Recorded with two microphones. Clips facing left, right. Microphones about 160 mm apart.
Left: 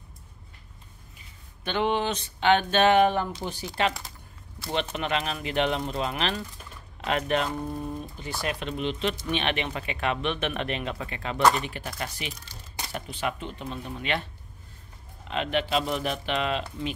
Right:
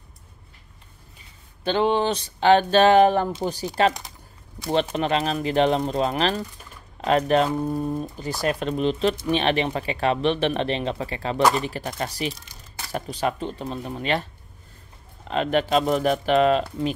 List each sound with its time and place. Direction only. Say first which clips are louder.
1.6 s speech: right 5 dB; 30° right (ahead or behind)
4.9 s speech: right 6 dB; 35° right (ahead or behind)
15.2 s speech: right 5 dB; 40° right (ahead or behind)